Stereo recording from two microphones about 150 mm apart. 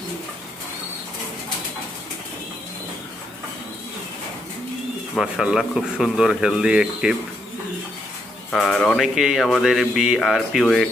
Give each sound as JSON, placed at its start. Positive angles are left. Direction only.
{"t": 5.1, "sound": "speech", "side_deg": -5}
{"t": 8.5, "sound": "speech", "side_deg": 5}